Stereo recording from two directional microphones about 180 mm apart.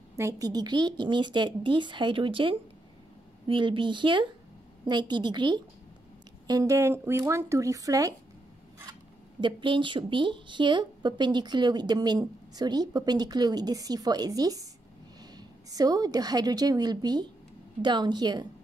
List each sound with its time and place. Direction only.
0.2 s speech: 20° right (ahead or behind)
9.4 s a woman's voice: 25° right (ahead or behind)